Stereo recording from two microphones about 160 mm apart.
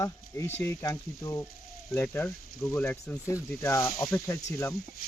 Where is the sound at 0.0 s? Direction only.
15° left (ahead or behind).